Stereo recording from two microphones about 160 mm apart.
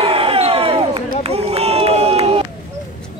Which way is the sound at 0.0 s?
35° right (ahead or behind).